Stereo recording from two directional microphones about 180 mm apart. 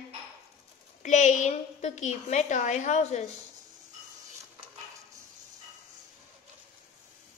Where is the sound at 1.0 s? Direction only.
40° left (ahead or behind).